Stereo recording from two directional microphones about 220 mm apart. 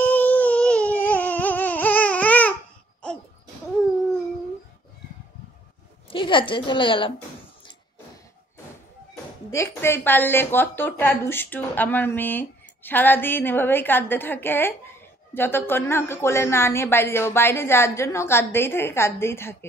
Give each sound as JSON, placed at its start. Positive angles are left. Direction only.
{"t": 0.0, "sound": "baby cry", "side_deg": 5}
{"t": 6.0, "sound": "a woman's voice", "side_deg": 20}
{"t": 9.1, "sound": "speech", "side_deg": 15}